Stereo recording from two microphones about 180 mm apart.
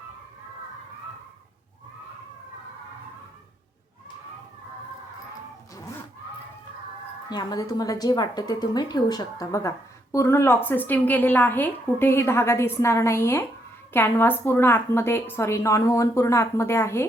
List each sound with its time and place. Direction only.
7.3 s speech: 20° left (ahead or behind)